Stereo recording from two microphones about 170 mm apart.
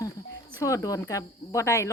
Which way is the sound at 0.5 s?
20° left (ahead or behind).